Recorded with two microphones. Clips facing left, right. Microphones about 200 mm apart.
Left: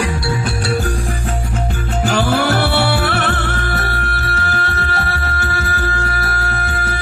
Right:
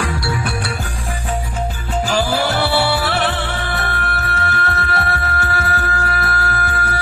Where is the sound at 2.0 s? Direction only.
60° left (ahead or behind); by 5.0 s 30° left (ahead or behind).